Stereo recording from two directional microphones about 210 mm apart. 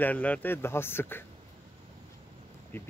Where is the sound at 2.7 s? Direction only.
10° left (ahead or behind).